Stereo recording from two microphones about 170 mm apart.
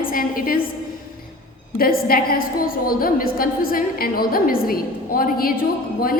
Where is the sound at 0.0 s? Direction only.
55° left (ahead or behind).